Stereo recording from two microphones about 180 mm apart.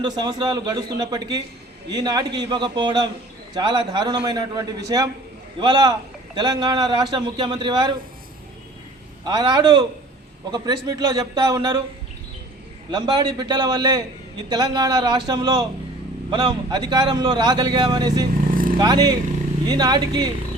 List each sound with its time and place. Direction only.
0.0 s a man's voice: 25° right (ahead or behind)
9.2 s a man's voice: 25° right (ahead or behind)
10.8 s a man's voice: 20° right (ahead or behind)
12.9 s a man's voice: 25° right (ahead or behind)